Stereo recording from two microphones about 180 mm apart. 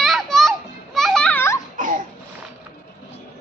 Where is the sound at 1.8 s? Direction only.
45° right (ahead or behind).